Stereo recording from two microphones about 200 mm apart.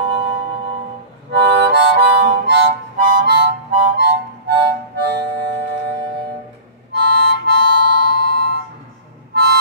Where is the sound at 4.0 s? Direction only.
60° right (ahead or behind).